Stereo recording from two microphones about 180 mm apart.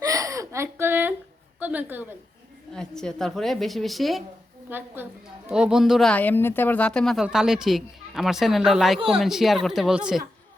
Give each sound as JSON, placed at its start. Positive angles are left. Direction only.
{"t": 0.0, "sound": "whimper", "side_deg": -20}
{"t": 1.5, "sound": "a woman's voice", "side_deg": -10}
{"t": 2.7, "sound": "speech", "side_deg": 5}
{"t": 4.7, "sound": "a woman's voice", "side_deg": -10}